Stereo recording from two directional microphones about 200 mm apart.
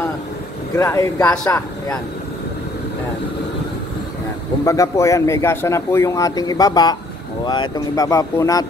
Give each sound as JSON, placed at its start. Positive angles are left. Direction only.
{"t": 0.7, "sound": "speech", "side_deg": 15}
{"t": 4.6, "sound": "speech", "side_deg": 15}